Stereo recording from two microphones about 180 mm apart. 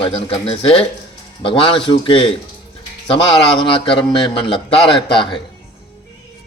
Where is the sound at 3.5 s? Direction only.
30° left (ahead or behind).